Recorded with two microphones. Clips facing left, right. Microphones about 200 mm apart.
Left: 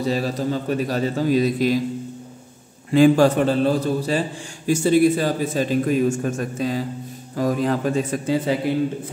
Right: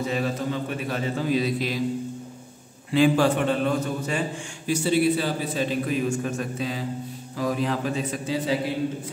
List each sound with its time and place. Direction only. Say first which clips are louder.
0.0 s a man's voice: left 4 dB; 35° left (ahead or behind)
2.9 s a man's voice: left 5 dB; 45° left (ahead or behind)
4.6 s a man's voice: left 5 dB; 45° left (ahead or behind)